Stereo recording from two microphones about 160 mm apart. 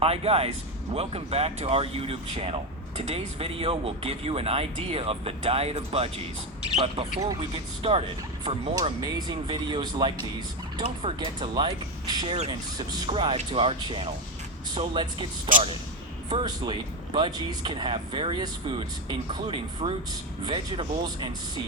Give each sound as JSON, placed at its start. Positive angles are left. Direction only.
{"t": 0.0, "sound": "speech", "side_deg": -40}
{"t": 8.7, "sound": "speech", "side_deg": -25}
{"t": 16.5, "sound": "speech", "side_deg": -30}